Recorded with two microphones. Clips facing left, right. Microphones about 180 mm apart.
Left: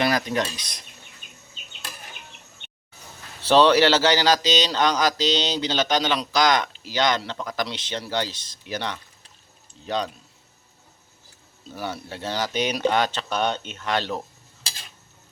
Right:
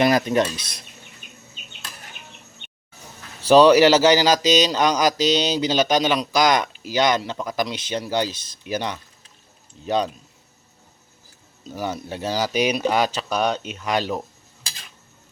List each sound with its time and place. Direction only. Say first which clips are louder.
0.0 s speech: right 5 dB; 20° right (ahead or behind)
0.5 s speech: right 4 dB; 15° left (ahead or behind)
3.5 s mantra: right 4 dB; 10° right (ahead or behind)
11.7 s mantra: right 4 dB; 15° right (ahead or behind)